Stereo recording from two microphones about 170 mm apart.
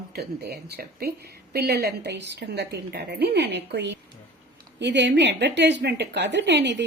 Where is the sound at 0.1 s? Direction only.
70° right (ahead or behind).